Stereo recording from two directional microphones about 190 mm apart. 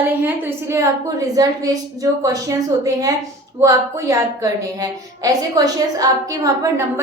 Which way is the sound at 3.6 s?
15° right (ahead or behind).